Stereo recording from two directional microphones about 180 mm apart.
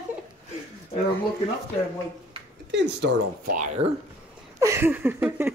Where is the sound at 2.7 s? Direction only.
80° right.